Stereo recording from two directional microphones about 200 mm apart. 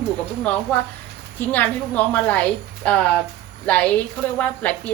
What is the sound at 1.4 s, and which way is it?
A woman's voice, 10° left (ahead or behind).